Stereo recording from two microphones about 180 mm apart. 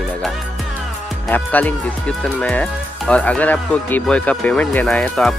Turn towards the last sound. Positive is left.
turn(degrees=5)  # may be behind; listen again after turning